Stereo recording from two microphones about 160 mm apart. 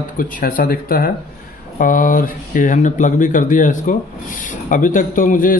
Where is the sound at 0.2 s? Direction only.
60° left (ahead or behind).